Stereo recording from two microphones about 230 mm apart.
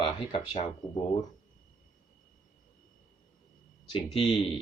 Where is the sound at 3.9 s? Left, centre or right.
Left.